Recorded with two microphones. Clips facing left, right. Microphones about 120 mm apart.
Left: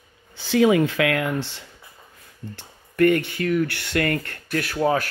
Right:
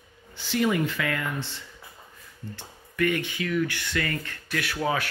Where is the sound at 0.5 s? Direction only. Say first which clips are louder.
Left 7 dB; 90° left.